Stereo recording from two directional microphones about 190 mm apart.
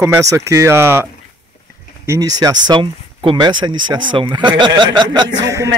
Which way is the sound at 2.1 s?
20° right (ahead or behind).